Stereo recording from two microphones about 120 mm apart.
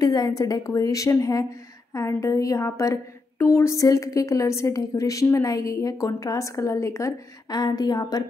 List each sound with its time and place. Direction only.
0.0 s a woman's voice: 30° left (ahead or behind)